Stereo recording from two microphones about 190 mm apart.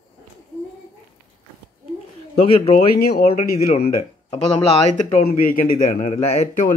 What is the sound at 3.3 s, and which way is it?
Speech, 35° left (ahead or behind).